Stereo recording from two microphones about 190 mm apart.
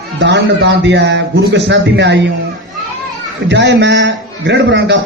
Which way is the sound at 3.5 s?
70° right (ahead or behind).